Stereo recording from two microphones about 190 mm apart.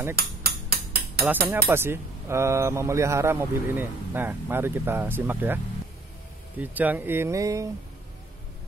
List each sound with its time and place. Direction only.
0.1 s cutlery: 55° right (ahead or behind)
1.2 s speech: 10° right (ahead or behind)
6.6 s speech: 10° right (ahead or behind)